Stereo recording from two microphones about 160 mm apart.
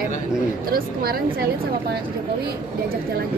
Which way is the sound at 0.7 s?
70° right (ahead or behind).